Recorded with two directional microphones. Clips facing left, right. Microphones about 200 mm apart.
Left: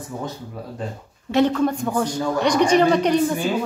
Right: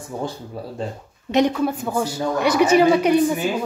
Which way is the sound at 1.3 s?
10° right (ahead or behind).